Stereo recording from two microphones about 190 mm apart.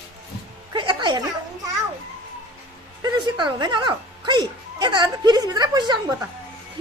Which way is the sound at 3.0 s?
25° right (ahead or behind).